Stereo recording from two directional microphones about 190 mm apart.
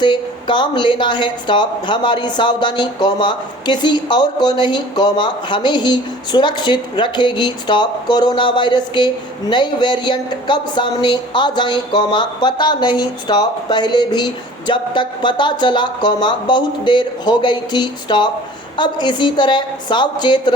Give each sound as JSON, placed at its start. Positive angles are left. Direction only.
{"t": 0.0, "sound": "a woman's voice", "side_deg": 25}